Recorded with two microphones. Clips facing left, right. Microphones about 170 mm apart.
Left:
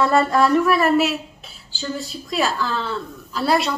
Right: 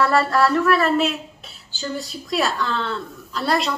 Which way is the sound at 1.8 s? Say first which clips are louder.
Even; centre (ahead or behind).